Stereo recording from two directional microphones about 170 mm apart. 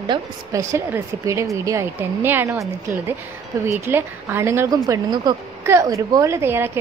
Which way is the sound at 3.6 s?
15° right (ahead or behind).